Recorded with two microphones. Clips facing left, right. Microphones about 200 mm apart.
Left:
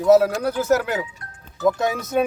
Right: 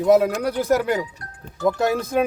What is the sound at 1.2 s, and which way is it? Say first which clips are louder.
Music: right 2 dB; 35° right (ahead or behind).